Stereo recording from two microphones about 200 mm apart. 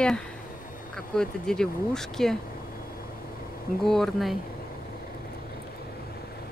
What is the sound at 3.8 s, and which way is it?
Speech, centre (ahead or behind).